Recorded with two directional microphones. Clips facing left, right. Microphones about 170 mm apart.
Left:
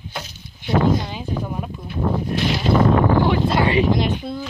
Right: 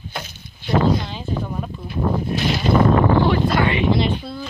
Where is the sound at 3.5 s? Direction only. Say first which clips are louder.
Left 1 dB; 30° left (ahead or behind).